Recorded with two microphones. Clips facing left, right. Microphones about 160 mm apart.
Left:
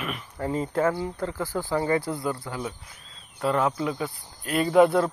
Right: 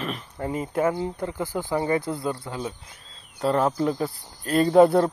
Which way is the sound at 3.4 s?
35° right (ahead or behind).